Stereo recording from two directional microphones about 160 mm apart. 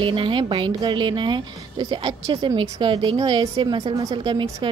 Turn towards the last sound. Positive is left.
turn(degrees=-30)  # may be behind; listen again after turning